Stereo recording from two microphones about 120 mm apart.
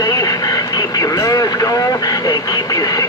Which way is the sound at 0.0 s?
30° left (ahead or behind).